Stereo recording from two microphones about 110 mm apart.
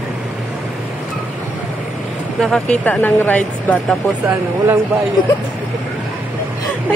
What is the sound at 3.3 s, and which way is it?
Speech, 15° left (ahead or behind).